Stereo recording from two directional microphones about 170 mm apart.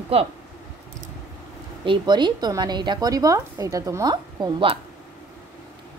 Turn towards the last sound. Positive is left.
turn(degrees=-30)  # may be behind; listen again after turning